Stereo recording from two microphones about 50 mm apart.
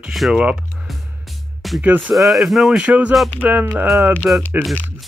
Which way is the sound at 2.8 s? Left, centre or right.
Right.